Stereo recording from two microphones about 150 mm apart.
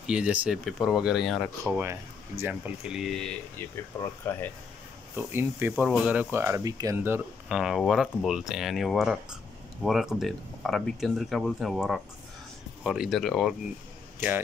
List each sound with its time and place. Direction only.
0.0 s speech: 5° right (ahead or behind)
1.6 s speech: 15° right (ahead or behind); by 3.6 s 5° left (ahead or behind)
4.0 s speech: 15° left (ahead or behind)
5.1 s speech: 15° right (ahead or behind)
7.5 s speech: centre (ahead or behind)